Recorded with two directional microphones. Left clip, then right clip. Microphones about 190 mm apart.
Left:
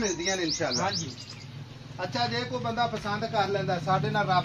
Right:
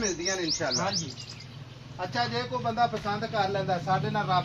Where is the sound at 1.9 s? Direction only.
40° left (ahead or behind).